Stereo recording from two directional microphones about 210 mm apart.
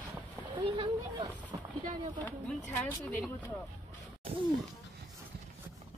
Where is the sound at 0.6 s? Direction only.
25° right (ahead or behind).